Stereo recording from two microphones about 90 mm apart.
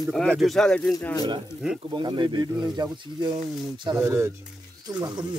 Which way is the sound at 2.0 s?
55° right (ahead or behind).